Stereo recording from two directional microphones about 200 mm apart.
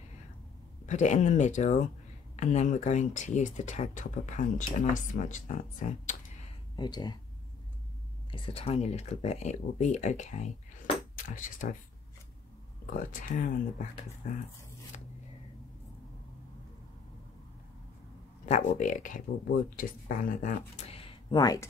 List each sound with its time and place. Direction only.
0.8 s speech: 35° left (ahead or behind)
6.8 s speech: 20° left (ahead or behind)
8.3 s speech: 30° left (ahead or behind)
12.8 s speech: 45° left (ahead or behind)
18.4 s speech: 35° left (ahead or behind); by 21.6 s 20° left (ahead or behind)